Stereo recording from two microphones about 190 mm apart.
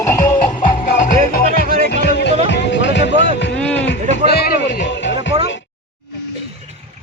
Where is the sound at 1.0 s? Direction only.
45° left (ahead or behind).